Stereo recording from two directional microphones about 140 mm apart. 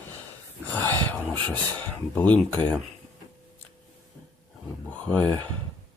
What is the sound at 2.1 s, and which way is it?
Speech, 10° left (ahead or behind).